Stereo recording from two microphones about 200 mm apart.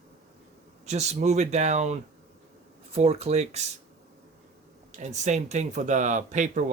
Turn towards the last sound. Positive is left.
turn(degrees=-35)  # may be behind; listen again after turning